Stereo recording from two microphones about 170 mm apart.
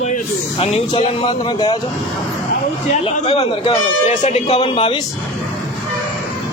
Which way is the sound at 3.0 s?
35° left (ahead or behind).